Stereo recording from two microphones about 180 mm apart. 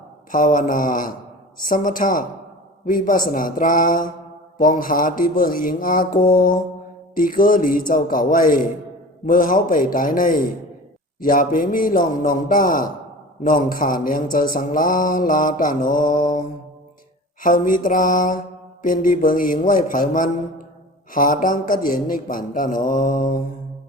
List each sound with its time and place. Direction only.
0.3 s speech: 50° left (ahead or behind)